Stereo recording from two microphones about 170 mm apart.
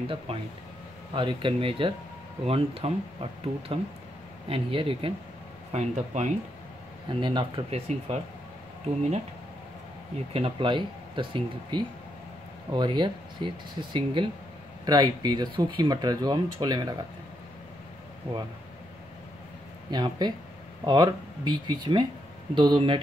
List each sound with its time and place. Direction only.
1.1 s speech: 30° right (ahead or behind)
7.1 s speech: 30° right (ahead or behind)
10.3 s speech: 30° right (ahead or behind)
19.9 s speech: 25° right (ahead or behind)